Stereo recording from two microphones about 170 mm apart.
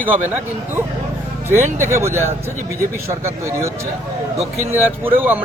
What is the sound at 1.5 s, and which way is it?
A man's voice, 15° right (ahead or behind).